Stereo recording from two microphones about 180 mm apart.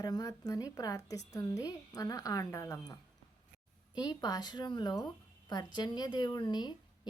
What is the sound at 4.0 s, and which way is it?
Speech, 20° left (ahead or behind).